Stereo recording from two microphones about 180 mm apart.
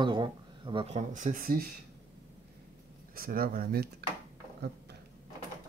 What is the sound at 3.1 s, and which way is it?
Speech, 55° right (ahead or behind).